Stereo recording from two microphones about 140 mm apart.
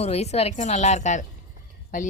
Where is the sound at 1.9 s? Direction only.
70° left (ahead or behind).